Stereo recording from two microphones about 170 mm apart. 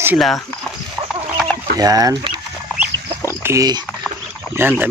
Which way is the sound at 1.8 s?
20° right (ahead or behind).